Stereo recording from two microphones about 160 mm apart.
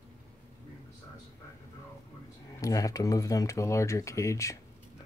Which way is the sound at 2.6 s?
20° left (ahead or behind).